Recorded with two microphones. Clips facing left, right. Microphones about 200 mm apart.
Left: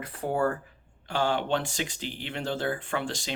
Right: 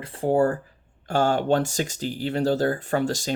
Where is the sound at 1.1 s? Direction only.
45° right (ahead or behind).